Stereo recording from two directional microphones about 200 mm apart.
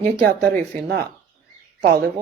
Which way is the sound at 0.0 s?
50° right (ahead or behind).